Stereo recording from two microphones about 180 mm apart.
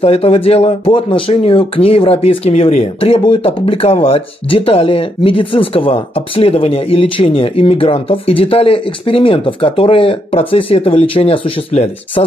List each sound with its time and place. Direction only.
0.0 s speech: 35° left (ahead or behind)